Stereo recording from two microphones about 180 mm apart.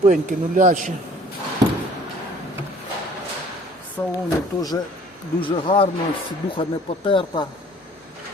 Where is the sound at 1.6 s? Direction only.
20° right (ahead or behind).